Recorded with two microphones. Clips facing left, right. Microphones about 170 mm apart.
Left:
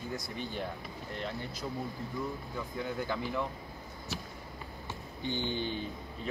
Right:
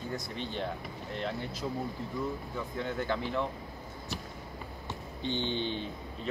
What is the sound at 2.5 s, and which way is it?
Speech, centre (ahead or behind).